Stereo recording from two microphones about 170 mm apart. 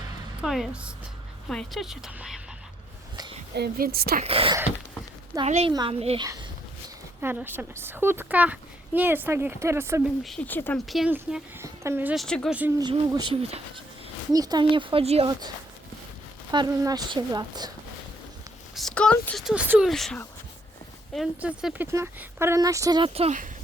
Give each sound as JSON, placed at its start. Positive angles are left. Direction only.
{"t": 0.4, "sound": "a woman's voice", "side_deg": 0}
{"t": 3.5, "sound": "a woman's voice", "side_deg": -70}
{"t": 4.2, "sound": "a child's voice", "side_deg": -35}
{"t": 7.2, "sound": "a child's voice", "side_deg": -10}
{"t": 10.2, "sound": "speech", "side_deg": 5}
{"t": 10.8, "sound": "a woman's voice", "side_deg": 0}
{"t": 11.6, "sound": "speech", "side_deg": -15}
{"t": 12.1, "sound": "a woman's voice", "side_deg": 5}
{"t": 12.8, "sound": "a woman's voice", "side_deg": -25}
{"t": 15.3, "sound": "a woman's voice", "side_deg": -25}
{"t": 18.7, "sound": "a woman's voice", "side_deg": 0}
{"t": 19.9, "sound": "a woman's voice", "side_deg": 5}